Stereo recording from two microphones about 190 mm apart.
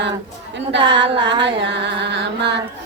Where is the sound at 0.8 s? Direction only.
25° right (ahead or behind).